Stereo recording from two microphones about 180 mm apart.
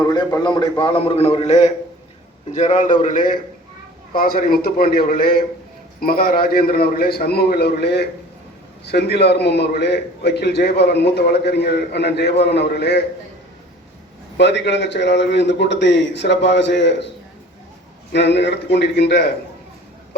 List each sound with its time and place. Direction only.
0.0 s a man's voice: 20° left (ahead or behind); by 13.0 s 70° left (ahead or behind)
14.3 s a man's voice: 75° left (ahead or behind)
18.1 s a man's voice: 70° left (ahead or behind)